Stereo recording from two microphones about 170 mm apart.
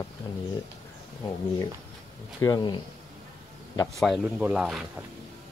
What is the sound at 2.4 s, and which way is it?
Speech, 25° left (ahead or behind).